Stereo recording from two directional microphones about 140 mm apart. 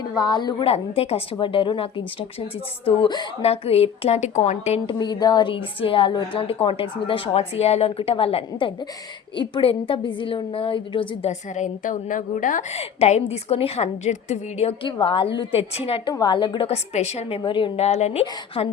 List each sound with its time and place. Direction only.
0.2 s a woman's voice: 30° left (ahead or behind)
0.6 s a woman's voice: 45° left (ahead or behind)
4.9 s a woman's voice: 30° left (ahead or behind)
11.3 s a woman's voice: 60° left (ahead or behind)
12.7 s a woman's voice: 50° left (ahead or behind)
14.8 s a woman's voice: 35° left (ahead or behind)
16.1 s a woman's voice: 30° left (ahead or behind)
16.6 s a woman's voice: 50° left (ahead or behind)